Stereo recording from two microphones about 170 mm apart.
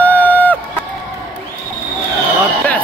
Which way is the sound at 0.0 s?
10° left (ahead or behind).